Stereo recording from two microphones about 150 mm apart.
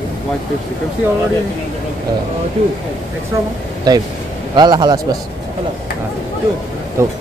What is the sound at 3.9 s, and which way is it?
Speech, 25° right (ahead or behind).